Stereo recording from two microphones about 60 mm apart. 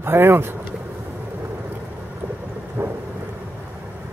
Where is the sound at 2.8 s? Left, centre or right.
Right.